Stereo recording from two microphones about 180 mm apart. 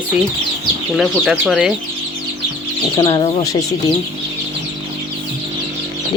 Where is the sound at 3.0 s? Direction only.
20° left (ahead or behind).